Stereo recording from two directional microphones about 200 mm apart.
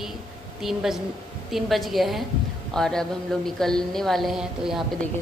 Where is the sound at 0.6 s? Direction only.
Centre (ahead or behind).